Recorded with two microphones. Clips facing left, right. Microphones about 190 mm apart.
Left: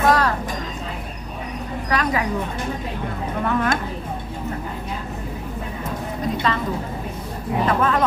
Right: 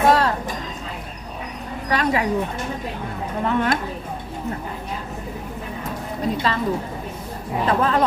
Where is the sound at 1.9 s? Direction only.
25° right (ahead or behind).